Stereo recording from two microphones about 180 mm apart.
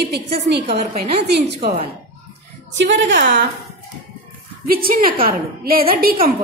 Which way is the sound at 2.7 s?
85° right.